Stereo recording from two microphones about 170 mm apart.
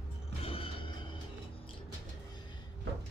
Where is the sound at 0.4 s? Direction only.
35° left (ahead or behind).